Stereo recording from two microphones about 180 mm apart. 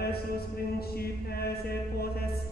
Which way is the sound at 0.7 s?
60° left (ahead or behind).